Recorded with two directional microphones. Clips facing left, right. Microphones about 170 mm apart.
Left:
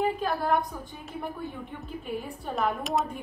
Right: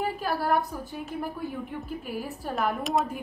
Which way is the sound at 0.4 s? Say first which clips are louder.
Right 1 dB; 5° right (ahead or behind).